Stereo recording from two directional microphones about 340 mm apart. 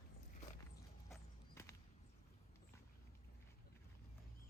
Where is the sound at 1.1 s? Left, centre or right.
Centre.